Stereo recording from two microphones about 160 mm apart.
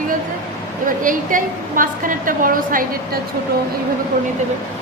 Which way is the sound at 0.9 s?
55° right (ahead or behind).